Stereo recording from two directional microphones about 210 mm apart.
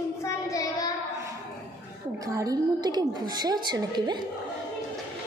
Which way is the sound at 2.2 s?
15° right (ahead or behind).